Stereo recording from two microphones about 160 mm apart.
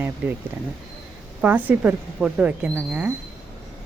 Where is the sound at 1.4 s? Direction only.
10° right (ahead or behind).